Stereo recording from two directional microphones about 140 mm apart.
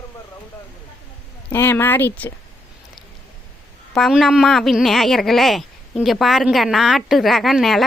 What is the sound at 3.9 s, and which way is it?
A woman's voice, centre (ahead or behind).